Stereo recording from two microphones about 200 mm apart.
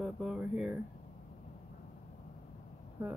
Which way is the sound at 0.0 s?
Centre (ahead or behind).